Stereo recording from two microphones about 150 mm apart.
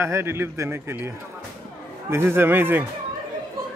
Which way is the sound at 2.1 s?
15° right (ahead or behind).